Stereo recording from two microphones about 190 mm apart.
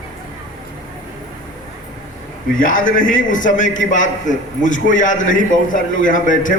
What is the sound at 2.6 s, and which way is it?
A man's voice, 45° left (ahead or behind).